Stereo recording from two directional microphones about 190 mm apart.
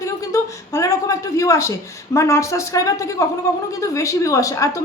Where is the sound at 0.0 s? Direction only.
15° left (ahead or behind).